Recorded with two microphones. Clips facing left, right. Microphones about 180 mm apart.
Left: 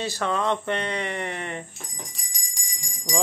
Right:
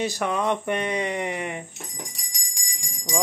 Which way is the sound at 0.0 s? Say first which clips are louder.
Right 1 dB; 15° right (ahead or behind).